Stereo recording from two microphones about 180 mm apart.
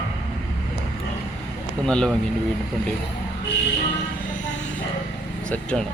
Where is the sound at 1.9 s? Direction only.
5° left (ahead or behind).